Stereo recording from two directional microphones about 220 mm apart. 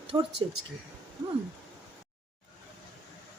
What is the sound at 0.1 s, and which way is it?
Speech, 20° right (ahead or behind).